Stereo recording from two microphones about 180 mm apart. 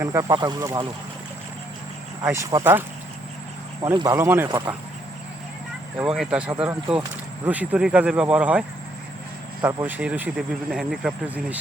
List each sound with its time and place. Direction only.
0.0 s speech: 15° right (ahead or behind)
2.2 s speech: 15° right (ahead or behind)
6.0 s speech: 5° right (ahead or behind)
9.6 s speech: 15° right (ahead or behind)